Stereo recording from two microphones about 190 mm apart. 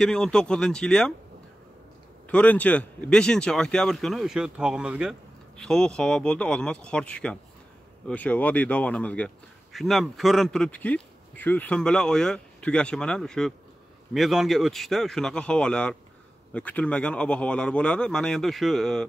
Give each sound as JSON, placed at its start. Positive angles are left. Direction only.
{"t": 0.0, "sound": "speech", "side_deg": 5}
{"t": 2.2, "sound": "speech", "side_deg": 10}